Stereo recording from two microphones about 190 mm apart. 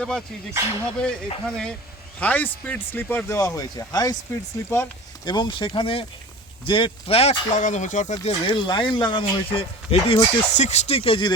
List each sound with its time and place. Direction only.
0.0 s a man's voice: 5° left (ahead or behind)
5.3 s speech: 25° left (ahead or behind)